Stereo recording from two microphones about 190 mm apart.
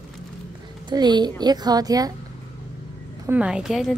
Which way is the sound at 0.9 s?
20° right (ahead or behind).